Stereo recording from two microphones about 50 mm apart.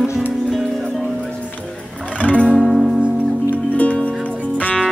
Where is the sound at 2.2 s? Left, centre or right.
Left.